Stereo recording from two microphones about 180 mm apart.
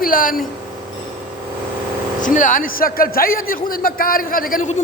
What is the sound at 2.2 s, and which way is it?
A man's voice, 45° left (ahead or behind).